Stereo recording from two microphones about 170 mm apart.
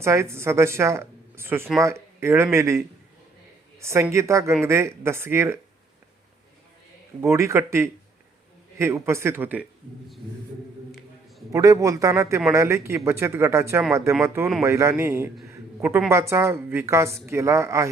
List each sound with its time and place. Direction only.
0.0 s a woman's voice: 15° right (ahead or behind)
7.2 s a woman's voice: 15° right (ahead or behind)
11.5 s a man's voice: 20° right (ahead or behind)